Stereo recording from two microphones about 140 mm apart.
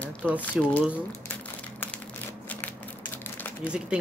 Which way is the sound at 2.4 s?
15° left (ahead or behind).